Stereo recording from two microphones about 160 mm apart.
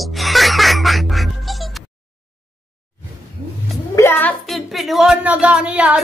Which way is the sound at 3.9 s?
15° left (ahead or behind).